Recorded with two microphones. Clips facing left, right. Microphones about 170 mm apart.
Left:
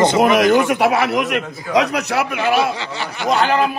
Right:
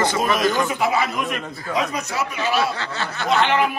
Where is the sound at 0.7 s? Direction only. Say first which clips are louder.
Left 6 dB; 75° left (ahead or behind); by 2.5 s 60° left (ahead or behind).